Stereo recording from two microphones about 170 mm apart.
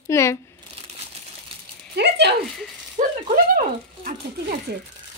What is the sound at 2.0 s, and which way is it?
Speech, 85° right.